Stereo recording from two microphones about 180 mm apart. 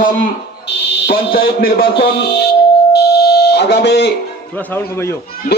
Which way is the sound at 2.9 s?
65° left (ahead or behind).